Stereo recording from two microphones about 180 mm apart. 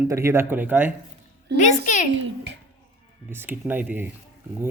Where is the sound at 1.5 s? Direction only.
45° left (ahead or behind).